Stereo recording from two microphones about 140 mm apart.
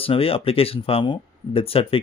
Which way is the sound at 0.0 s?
40° left (ahead or behind).